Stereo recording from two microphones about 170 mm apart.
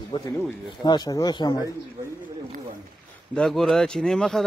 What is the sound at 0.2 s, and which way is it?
A man's voice, 25° left (ahead or behind).